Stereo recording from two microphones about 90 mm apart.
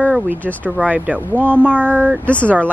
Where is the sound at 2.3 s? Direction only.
15° left (ahead or behind).